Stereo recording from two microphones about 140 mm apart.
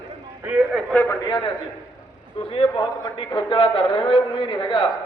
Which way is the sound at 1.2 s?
35° left (ahead or behind).